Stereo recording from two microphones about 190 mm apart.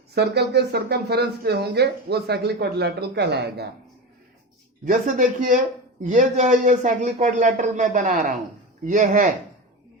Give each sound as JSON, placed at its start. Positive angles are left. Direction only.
{"t": 0.1, "sound": "speech", "side_deg": -60}
{"t": 4.9, "sound": "speech", "side_deg": -45}